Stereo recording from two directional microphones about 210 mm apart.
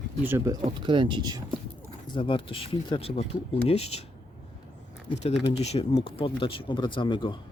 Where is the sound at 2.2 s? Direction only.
25° left (ahead or behind).